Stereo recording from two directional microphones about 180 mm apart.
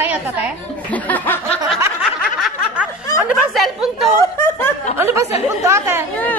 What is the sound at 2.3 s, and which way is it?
Snicker, 5° right (ahead or behind).